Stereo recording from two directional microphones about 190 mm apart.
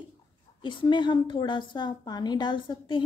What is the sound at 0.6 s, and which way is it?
A woman's voice, 25° left (ahead or behind).